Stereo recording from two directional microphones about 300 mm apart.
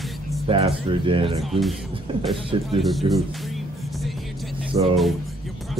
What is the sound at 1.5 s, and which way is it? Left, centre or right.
Speech, centre.